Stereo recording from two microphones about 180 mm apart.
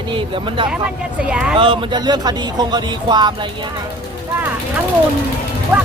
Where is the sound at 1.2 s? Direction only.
5° right (ahead or behind).